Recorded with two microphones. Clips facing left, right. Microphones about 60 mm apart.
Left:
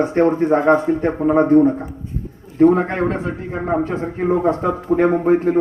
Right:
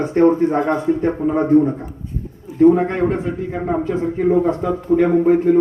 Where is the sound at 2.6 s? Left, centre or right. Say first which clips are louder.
Right 1 dB; left.